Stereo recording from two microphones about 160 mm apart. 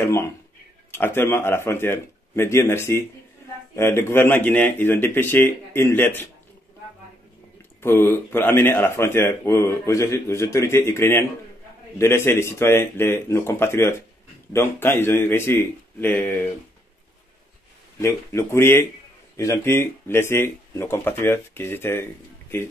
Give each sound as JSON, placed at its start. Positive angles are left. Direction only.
{"t": 0.0, "sound": "speech", "side_deg": 15}
{"t": 7.8, "sound": "speech", "side_deg": 15}
{"t": 18.0, "sound": "speech", "side_deg": 15}